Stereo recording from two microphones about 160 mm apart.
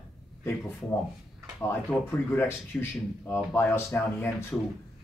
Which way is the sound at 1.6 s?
15° left (ahead or behind).